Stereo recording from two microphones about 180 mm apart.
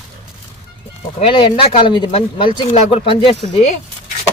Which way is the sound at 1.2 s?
30° left (ahead or behind).